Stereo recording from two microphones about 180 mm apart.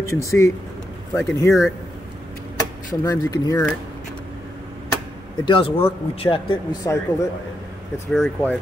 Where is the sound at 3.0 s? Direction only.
20° left (ahead or behind).